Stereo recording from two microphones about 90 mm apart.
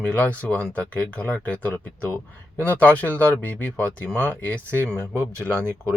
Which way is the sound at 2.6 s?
20° left (ahead or behind).